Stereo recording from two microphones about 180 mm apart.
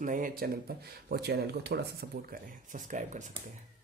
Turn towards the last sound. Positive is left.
turn(degrees=-45)  # may be behind; listen again after turning